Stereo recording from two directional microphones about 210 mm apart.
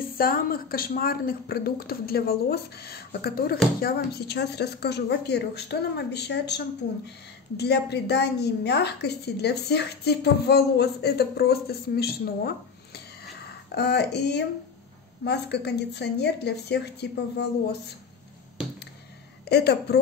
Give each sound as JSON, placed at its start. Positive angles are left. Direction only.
{"t": 0.0, "sound": "a woman's voice", "side_deg": 45}
{"t": 19.5, "sound": "a woman's voice", "side_deg": 50}